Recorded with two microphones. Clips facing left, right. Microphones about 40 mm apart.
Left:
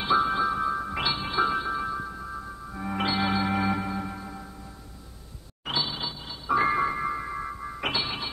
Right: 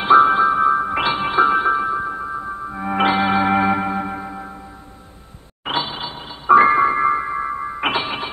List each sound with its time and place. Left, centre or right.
0.0 s chime: right
2.7 s music: right
5.7 s music: right